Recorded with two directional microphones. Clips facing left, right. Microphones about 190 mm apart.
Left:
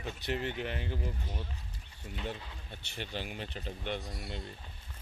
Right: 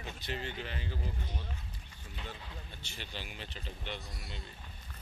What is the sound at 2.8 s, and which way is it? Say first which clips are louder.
Speech: left 8 dB; 60° left (ahead or behind).